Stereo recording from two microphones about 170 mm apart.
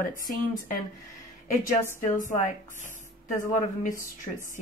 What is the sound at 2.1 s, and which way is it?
Speech, 45° left (ahead or behind).